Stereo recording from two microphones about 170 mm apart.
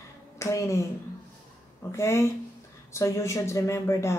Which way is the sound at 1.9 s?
15° left (ahead or behind).